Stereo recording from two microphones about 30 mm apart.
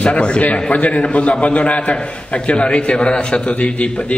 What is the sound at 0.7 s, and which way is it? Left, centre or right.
A man's voice, left.